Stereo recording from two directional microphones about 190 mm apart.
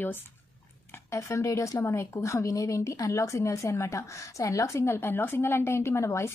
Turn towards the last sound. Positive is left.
turn(degrees=15)  # may be behind; listen again after turning